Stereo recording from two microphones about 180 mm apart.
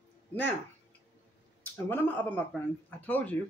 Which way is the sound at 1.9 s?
10° left (ahead or behind).